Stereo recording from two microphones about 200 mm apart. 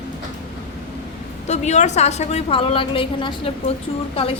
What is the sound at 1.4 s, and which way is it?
A woman's voice, 35° left (ahead or behind).